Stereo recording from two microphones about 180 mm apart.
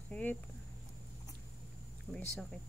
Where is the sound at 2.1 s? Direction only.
5° left (ahead or behind).